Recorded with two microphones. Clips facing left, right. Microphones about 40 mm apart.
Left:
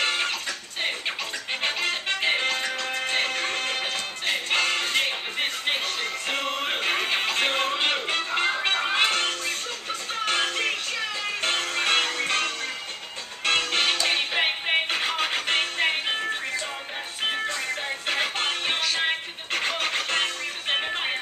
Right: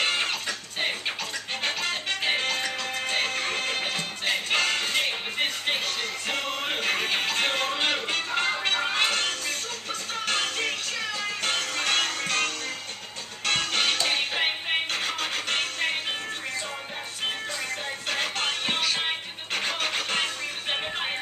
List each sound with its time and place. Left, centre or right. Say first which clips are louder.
0.0 s music: left 1 dB; centre
1.6 s music: left 2 dB; centre
18.0 s music: left 2 dB; centre